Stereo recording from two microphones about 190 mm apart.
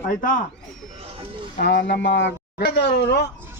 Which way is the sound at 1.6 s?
65° left (ahead or behind).